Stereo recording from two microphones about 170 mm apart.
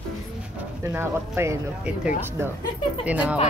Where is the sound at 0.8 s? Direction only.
15° right (ahead or behind).